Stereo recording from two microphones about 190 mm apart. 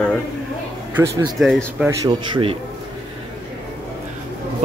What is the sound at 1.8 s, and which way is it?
Speech, 25° right (ahead or behind).